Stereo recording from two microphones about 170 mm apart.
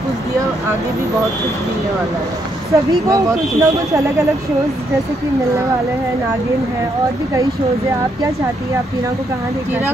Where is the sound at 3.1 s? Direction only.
20° right (ahead or behind).